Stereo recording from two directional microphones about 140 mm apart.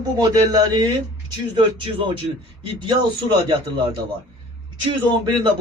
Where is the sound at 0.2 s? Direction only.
30° right (ahead or behind).